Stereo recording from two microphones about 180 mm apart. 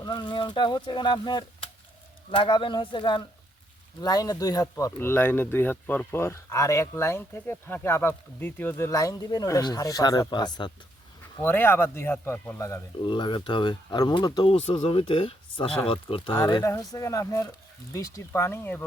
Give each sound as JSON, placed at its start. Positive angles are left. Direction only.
{"t": 0.0, "sound": "speech", "side_deg": 25}
{"t": 11.3, "sound": "speech", "side_deg": 15}
{"t": 13.1, "sound": "speech", "side_deg": 25}